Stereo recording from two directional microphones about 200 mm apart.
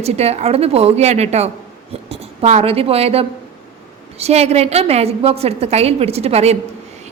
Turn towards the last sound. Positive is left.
turn(degrees=-30)  # may be behind; listen again after turning